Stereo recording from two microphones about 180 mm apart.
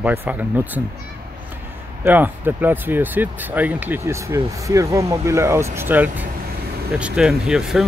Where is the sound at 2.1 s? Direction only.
10° right (ahead or behind).